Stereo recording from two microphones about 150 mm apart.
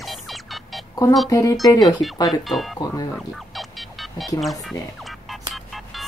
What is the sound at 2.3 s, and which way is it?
Speech, centre (ahead or behind).